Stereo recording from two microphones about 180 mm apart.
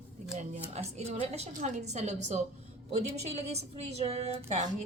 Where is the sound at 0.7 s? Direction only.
35° right (ahead or behind).